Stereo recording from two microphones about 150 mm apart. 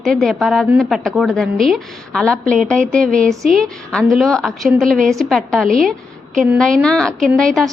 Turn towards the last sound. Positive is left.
turn(degrees=5)  # may be behind; listen again after turning